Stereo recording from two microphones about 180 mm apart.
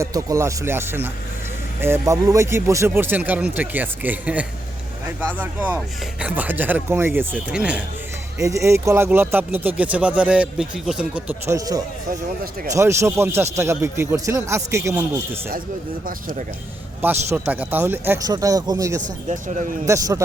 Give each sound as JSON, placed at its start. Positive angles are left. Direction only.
{"t": 0.0, "sound": "speech", "side_deg": -20}
{"t": 8.4, "sound": "speech", "side_deg": -15}
{"t": 11.5, "sound": "speech", "side_deg": -20}
{"t": 17.0, "sound": "speech", "side_deg": -10}
{"t": 18.9, "sound": "speech", "side_deg": -45}
{"t": 19.9, "sound": "speech", "side_deg": -15}